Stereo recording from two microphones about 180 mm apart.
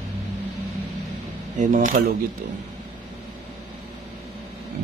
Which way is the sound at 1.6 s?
45° right (ahead or behind).